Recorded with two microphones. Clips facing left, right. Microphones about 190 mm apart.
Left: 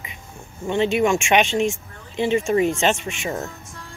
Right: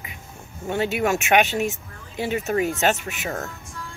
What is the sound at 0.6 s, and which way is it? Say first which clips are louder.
Speech: left 4 dB; 5° right (ahead or behind).